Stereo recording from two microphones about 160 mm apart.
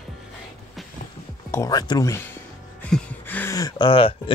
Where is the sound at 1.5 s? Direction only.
20° left (ahead or behind).